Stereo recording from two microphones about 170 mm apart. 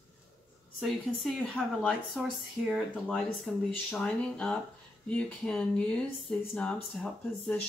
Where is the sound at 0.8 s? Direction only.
Centre (ahead or behind).